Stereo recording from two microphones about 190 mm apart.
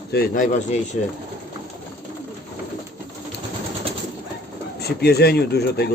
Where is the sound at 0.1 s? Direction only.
50° left (ahead or behind).